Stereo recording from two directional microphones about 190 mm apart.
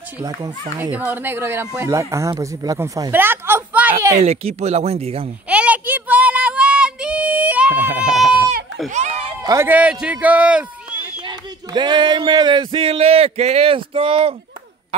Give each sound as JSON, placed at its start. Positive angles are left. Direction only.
{"t": 0.9, "sound": "speech", "side_deg": -10}
{"t": 4.2, "sound": "speech", "side_deg": -35}
{"t": 5.5, "sound": "a sound", "side_deg": -5}
{"t": 7.9, "sound": "a sound", "side_deg": -40}
{"t": 9.5, "sound": "speech", "side_deg": -10}
{"t": 11.1, "sound": "speech", "side_deg": -25}